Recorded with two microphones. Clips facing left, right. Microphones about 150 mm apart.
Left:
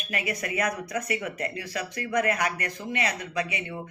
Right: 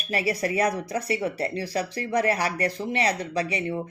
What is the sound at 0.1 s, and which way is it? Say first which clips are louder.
Speech: right 5 dB; 35° right (ahead or behind).